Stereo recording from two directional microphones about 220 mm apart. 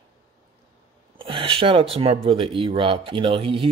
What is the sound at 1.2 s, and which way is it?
Speech, 25° right (ahead or behind).